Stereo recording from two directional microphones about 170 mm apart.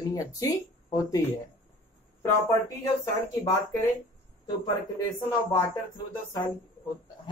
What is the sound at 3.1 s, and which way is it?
Speech, 15° left (ahead or behind).